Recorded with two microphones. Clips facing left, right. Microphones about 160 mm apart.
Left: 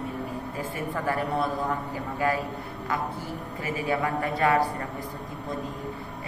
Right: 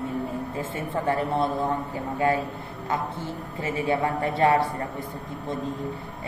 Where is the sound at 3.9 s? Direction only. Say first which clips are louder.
Right 2 dB; 25° right (ahead or behind).